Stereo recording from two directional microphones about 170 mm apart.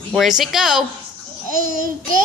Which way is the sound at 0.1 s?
Centre (ahead or behind).